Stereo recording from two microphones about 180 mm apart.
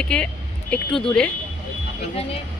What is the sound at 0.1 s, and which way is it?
Speech, 5° left (ahead or behind).